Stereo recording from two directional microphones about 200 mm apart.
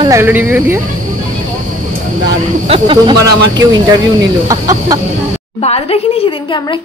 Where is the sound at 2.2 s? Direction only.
25° right (ahead or behind).